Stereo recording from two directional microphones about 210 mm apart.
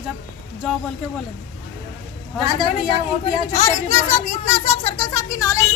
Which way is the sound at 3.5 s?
30° left (ahead or behind).